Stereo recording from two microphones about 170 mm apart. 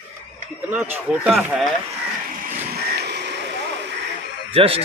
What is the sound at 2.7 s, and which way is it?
Music, 75° right (ahead or behind).